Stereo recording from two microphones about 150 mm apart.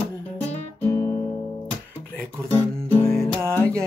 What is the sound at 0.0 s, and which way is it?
Guitar, 10° left (ahead or behind).